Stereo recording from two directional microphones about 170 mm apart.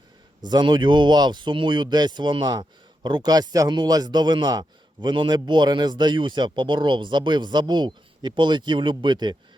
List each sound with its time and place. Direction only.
0.4 s speech: 25° right (ahead or behind)